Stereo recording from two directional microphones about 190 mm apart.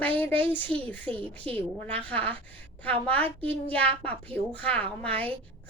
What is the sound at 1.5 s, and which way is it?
Speech, 30° right (ahead or behind).